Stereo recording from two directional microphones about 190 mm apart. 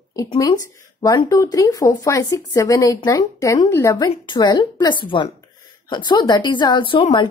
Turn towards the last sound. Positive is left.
turn(degrees=25)  # may be behind; listen again after turning